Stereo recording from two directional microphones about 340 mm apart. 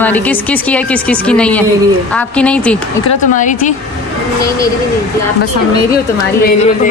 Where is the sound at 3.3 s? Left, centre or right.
Left.